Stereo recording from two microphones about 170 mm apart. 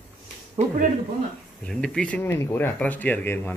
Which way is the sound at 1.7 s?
5° left (ahead or behind).